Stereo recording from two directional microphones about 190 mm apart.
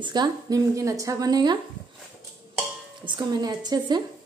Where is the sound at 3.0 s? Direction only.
25° right (ahead or behind).